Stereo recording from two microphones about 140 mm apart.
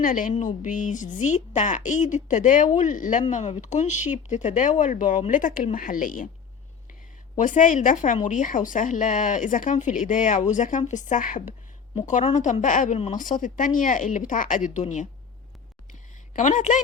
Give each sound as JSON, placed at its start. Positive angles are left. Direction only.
{"t": 0.0, "sound": "a woman's voice", "side_deg": 70}
{"t": 5.3, "sound": "speech", "side_deg": 75}
{"t": 7.3, "sound": "a woman's voice", "side_deg": 65}
{"t": 15.9, "sound": "a sound", "side_deg": 65}